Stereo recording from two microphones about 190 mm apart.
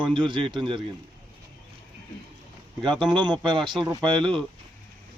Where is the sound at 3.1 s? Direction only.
25° right (ahead or behind).